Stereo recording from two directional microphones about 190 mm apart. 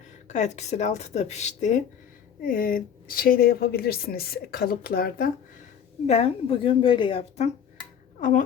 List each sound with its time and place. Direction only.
0.3 s a woman's voice: 35° left (ahead or behind)
6.1 s a woman's voice: 30° left (ahead or behind)